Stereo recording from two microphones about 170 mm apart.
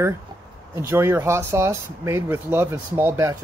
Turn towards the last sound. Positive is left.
turn(degrees=-15)  # may be behind; listen again after turning